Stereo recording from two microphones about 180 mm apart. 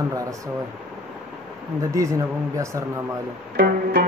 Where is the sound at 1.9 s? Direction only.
15° right (ahead or behind).